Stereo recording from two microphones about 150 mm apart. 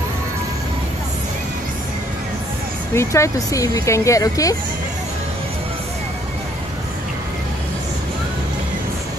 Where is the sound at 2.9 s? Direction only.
20° left (ahead or behind).